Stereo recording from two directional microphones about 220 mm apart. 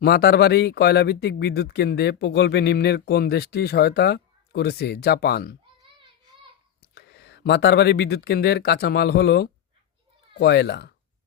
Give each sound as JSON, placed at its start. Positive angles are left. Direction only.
{"t": 0.0, "sound": "speech", "side_deg": 45}
{"t": 6.9, "sound": "speech", "side_deg": 50}